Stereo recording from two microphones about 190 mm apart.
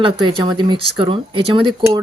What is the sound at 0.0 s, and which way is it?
Speech, 25° right (ahead or behind).